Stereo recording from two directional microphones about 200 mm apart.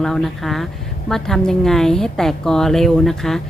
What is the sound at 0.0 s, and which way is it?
Speech, centre (ahead or behind).